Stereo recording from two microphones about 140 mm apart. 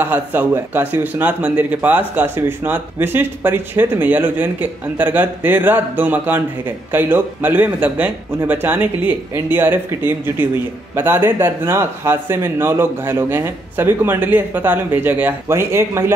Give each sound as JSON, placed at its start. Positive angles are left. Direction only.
{"t": 0.0, "sound": "speech", "side_deg": -15}